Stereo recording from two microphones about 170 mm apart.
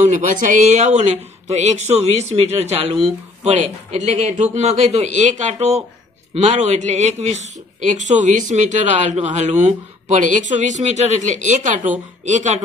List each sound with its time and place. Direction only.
0.0 s a man's voice: 50° right (ahead or behind)